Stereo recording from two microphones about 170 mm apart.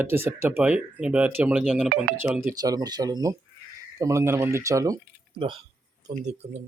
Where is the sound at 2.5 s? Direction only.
20° right (ahead or behind).